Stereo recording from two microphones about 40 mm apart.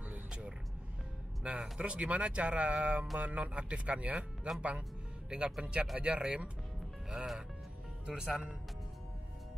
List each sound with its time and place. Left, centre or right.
1.4 s speech: right
8.1 s speech: right